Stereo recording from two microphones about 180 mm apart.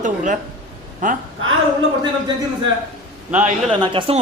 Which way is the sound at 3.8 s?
30° right (ahead or behind).